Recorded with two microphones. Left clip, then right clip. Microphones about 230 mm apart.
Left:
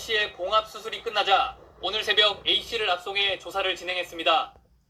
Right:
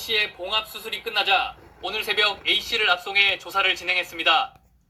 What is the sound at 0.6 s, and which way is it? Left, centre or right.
Speech, centre.